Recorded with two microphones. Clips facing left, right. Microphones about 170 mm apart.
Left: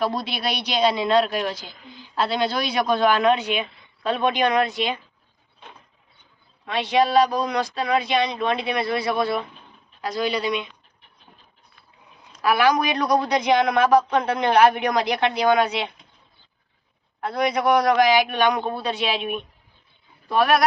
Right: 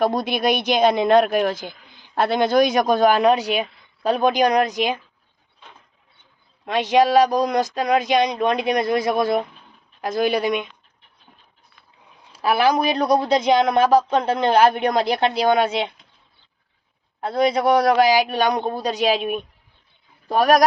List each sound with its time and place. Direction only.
0.0 s speech: 50° right (ahead or behind)
6.7 s speech: 45° right (ahead or behind)
12.4 s speech: 30° right (ahead or behind)
17.2 s speech: 30° right (ahead or behind)